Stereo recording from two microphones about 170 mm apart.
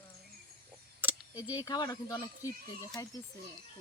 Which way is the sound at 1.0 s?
10° right (ahead or behind).